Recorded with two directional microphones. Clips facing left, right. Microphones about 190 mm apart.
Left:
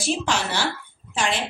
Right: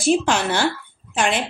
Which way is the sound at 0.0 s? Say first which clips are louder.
Right 6 dB; 55° right (ahead or behind).